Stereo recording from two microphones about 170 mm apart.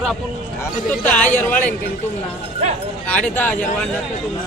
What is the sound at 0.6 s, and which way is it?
Speech, 10° left (ahead or behind).